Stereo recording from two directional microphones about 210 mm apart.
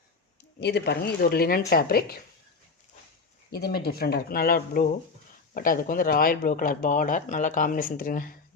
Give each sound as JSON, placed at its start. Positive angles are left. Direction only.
{"t": 0.6, "sound": "speech", "side_deg": 50}
{"t": 3.5, "sound": "speech", "side_deg": 50}